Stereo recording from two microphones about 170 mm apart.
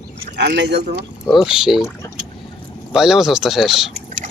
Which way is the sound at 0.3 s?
90° right.